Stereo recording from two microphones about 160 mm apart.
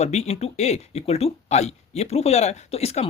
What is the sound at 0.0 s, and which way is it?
Speech, 45° left (ahead or behind).